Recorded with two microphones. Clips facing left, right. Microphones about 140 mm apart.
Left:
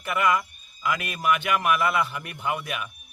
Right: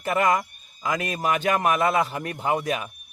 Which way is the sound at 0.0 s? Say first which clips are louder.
Right 2 dB; 40° right (ahead or behind).